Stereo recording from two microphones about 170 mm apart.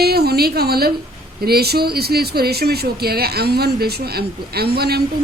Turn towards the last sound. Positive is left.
turn(degrees=-70)  # may be behind; listen again after turning